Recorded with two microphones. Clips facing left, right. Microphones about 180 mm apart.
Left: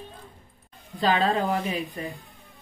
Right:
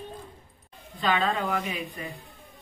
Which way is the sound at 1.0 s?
35° left (ahead or behind).